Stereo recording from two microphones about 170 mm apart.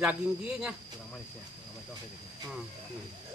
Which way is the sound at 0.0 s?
5° right (ahead or behind).